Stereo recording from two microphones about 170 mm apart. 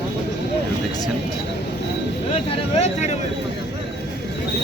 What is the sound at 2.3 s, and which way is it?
Speech, 40° left (ahead or behind).